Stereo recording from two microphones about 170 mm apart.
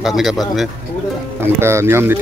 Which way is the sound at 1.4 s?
15° right (ahead or behind).